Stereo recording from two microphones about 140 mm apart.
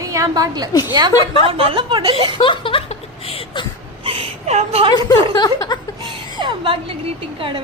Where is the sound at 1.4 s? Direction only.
35° right (ahead or behind).